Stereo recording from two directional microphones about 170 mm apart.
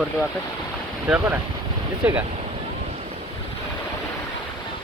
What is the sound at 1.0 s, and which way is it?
Speech, 10° right (ahead or behind).